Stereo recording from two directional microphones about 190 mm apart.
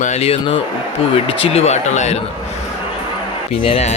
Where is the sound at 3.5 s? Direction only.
30° left (ahead or behind).